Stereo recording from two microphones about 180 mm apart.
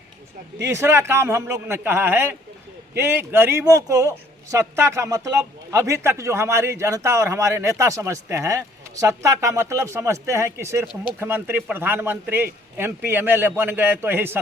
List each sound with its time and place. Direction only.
0.6 s a man's voice: 15° right (ahead or behind)